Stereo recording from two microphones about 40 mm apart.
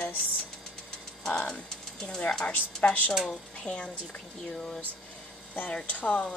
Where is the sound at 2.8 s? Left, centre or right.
Left.